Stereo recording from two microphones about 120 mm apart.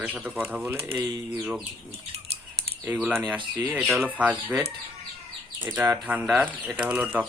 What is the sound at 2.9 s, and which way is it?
Speech, 15° right (ahead or behind).